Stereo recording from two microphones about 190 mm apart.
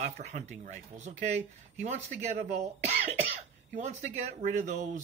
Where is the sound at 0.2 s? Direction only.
35° right (ahead or behind).